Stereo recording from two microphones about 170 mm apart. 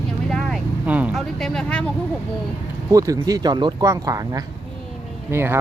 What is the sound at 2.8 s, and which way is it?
Speech, 20° right (ahead or behind).